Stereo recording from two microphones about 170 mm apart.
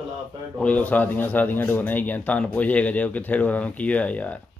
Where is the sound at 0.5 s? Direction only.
10° left (ahead or behind).